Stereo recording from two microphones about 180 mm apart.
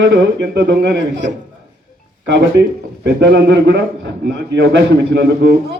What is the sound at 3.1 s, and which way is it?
A man's voice, 75° right (ahead or behind).